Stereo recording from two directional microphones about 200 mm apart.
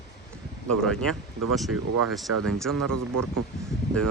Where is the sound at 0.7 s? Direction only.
5° left (ahead or behind).